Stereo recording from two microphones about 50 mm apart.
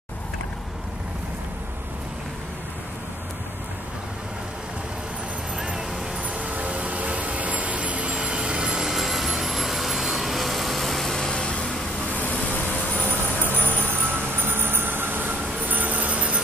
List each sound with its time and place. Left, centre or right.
5.6 s vehicle: centre
6.2 s vehicle: right
8.8 s vehicle: centre
12.2 s vehicle: left
13.8 s train: right